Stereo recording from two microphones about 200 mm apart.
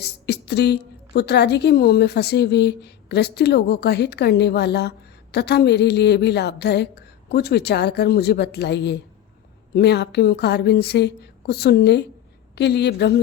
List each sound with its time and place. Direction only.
0.0 s a woman's voice: 55° left (ahead or behind)